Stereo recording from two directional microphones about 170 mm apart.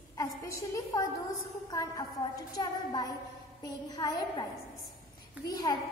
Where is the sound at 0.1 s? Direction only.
20° left (ahead or behind).